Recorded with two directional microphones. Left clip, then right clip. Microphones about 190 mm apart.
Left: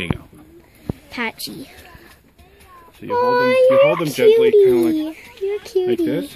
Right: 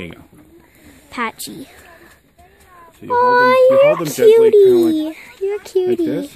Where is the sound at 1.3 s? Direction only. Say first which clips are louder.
Left 1 dB; 25° right (ahead or behind).